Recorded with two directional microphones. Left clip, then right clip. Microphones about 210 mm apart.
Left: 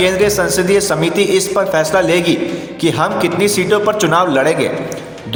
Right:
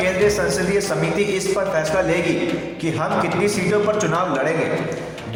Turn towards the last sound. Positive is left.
turn(degrees=45)  # may be behind; listen again after turning